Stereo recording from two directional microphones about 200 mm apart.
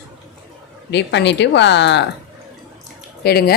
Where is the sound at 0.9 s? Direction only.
60° left (ahead or behind).